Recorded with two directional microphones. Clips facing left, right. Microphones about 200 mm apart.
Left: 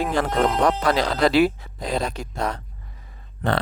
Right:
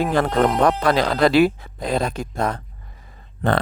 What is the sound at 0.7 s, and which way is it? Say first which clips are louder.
Speech: right 2 dB; 55° right (ahead or behind).